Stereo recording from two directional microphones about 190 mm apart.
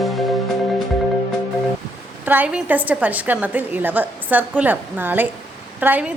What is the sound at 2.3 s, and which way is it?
A woman's voice, 10° right (ahead or behind).